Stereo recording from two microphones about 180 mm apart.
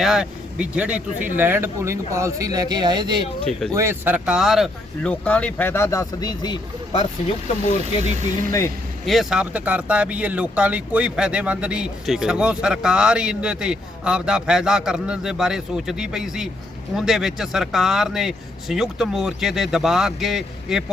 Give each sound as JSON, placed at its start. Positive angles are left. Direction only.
{"t": 0.0, "sound": "speech", "side_deg": -5}
{"t": 3.8, "sound": "speech", "side_deg": -10}
{"t": 7.4, "sound": "speech", "side_deg": 40}
{"t": 9.0, "sound": "speech", "side_deg": 0}